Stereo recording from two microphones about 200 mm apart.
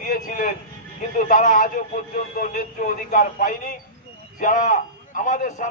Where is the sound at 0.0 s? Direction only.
45° left (ahead or behind).